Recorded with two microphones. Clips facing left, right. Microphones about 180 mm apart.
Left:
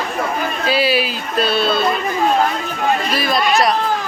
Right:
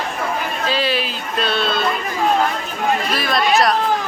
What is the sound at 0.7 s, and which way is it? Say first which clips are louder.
Speech: left 4 dB; 10° left (ahead or behind).